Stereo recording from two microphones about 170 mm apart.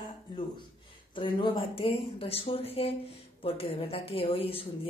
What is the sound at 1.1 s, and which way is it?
Speech, 30° left (ahead or behind).